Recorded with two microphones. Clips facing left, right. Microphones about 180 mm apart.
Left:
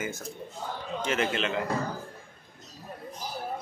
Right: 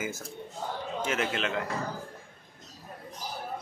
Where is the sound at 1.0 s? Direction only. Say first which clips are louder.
Left 2 dB; centre (ahead or behind).